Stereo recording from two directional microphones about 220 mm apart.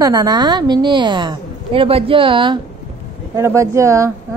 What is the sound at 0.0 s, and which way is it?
A woman's voice, 15° right (ahead or behind).